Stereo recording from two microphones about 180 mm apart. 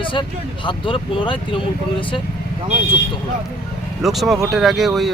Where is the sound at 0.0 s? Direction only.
30° left (ahead or behind).